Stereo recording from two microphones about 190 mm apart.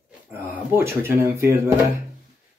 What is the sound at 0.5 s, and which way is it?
Speech, 10° right (ahead or behind).